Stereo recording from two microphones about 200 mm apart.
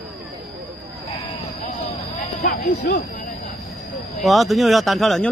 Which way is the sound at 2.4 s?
45° left (ahead or behind).